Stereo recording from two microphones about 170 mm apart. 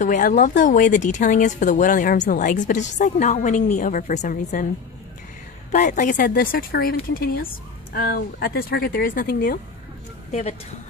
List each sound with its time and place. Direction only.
0.0 s speech: 50° left (ahead or behind)
5.7 s speech: 45° left (ahead or behind)